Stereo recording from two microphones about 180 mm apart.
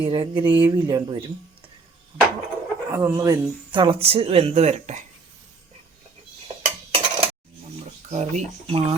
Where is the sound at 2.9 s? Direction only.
10° right (ahead or behind); by 5.0 s 40° right (ahead or behind).